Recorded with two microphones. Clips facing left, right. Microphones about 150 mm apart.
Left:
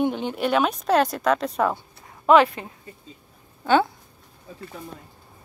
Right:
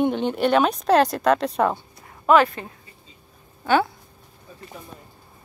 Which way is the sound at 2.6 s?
15° left (ahead or behind).